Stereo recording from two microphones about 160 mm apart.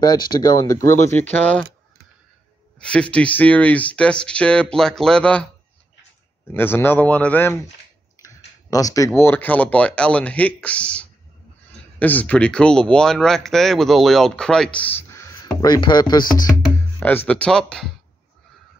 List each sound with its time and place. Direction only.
0.0 s speech: 25° left (ahead or behind); by 1.7 s 10° left (ahead or behind)
2.8 s speech: 5° left (ahead or behind)
6.5 s speech: 15° left (ahead or behind)
8.2 s speech: 20° left (ahead or behind)
15.0 s speech: 20° left (ahead or behind)
17.0 s speech: 10° left (ahead or behind)